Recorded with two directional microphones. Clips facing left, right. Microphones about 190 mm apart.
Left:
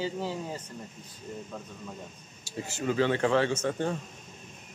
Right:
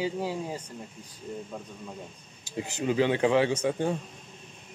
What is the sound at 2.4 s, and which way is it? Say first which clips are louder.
Speech: right 2 dB; 15° right (ahead or behind).